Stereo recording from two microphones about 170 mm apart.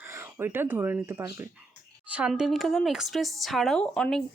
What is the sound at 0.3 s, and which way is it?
Speech, 15° right (ahead or behind).